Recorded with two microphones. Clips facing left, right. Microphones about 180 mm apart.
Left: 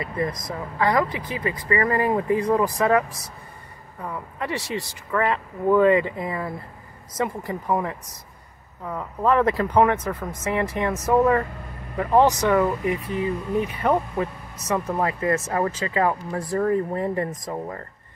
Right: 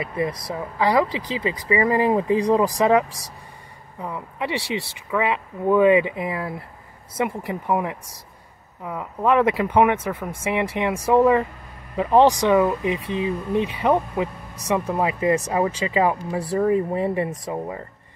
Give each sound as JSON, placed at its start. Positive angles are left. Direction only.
{"t": 0.5, "sound": "speech", "side_deg": -10}